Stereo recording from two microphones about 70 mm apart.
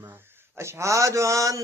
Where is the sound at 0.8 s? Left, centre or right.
Right.